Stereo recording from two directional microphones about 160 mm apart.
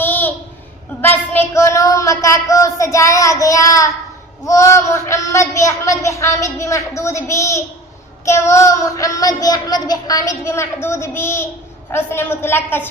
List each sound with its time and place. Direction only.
0.0 s a sound: 10° left (ahead or behind)
1.0 s child singing: 15° left (ahead or behind)
11.9 s a woman's voice: 15° left (ahead or behind)